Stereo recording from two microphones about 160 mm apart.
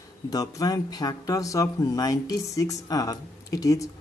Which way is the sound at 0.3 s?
25° left (ahead or behind).